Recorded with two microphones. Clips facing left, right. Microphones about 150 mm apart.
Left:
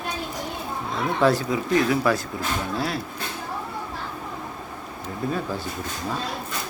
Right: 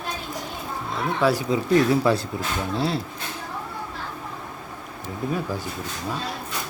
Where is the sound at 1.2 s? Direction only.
10° right (ahead or behind).